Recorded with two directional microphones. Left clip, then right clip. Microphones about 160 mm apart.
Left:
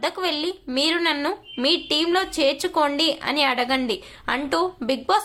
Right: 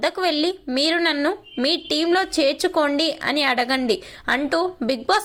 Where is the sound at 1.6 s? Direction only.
25° right (ahead or behind).